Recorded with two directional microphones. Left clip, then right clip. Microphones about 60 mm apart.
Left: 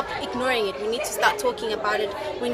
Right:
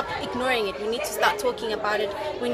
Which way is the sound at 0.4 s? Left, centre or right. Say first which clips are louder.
Left 1 dB; left.